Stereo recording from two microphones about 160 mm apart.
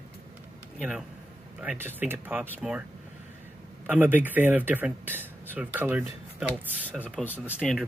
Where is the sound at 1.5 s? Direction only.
10° right (ahead or behind).